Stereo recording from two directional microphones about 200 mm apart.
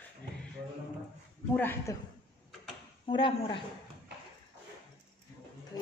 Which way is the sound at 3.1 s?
25° left (ahead or behind).